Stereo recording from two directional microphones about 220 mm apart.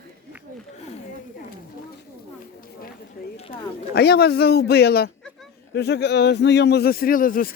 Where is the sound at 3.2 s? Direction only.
45° left (ahead or behind).